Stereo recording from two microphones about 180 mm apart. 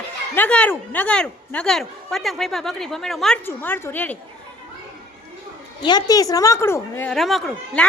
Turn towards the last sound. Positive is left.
turn(degrees=0)  # may be behind; listen again after turning